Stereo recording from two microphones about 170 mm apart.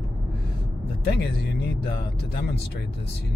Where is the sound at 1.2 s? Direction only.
80° left.